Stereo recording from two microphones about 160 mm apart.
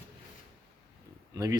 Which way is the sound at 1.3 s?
20° right (ahead or behind).